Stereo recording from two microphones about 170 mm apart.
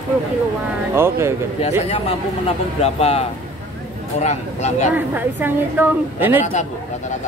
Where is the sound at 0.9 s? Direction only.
15° right (ahead or behind).